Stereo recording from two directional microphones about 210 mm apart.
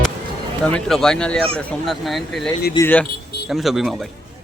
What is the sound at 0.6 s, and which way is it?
Speech, 5° left (ahead or behind).